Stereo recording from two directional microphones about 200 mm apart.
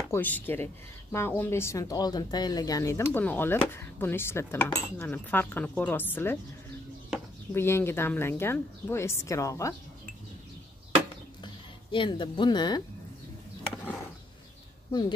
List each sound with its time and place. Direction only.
0.1 s speech: 10° left (ahead or behind)
11.4 s speech: 25° left (ahead or behind)
14.9 s speech: 20° left (ahead or behind)